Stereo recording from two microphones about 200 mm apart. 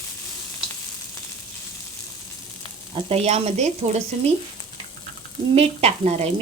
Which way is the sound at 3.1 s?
30° right (ahead or behind).